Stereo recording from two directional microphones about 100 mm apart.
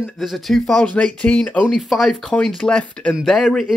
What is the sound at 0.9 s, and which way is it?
Speech, 15° left (ahead or behind).